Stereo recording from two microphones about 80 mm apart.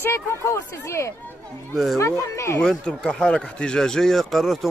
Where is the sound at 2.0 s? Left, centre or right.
Left.